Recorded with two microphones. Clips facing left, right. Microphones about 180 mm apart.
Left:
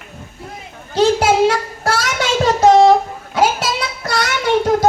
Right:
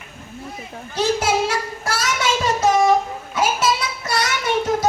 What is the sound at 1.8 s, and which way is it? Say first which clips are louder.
Child singing: left 4 dB; 70° left (ahead or behind).